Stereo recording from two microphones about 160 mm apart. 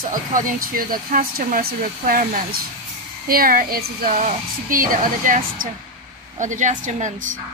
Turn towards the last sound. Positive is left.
turn(degrees=-45)  # may be behind; listen again after turning